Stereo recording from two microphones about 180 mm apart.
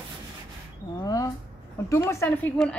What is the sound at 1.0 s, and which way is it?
A woman's voice, 20° left (ahead or behind).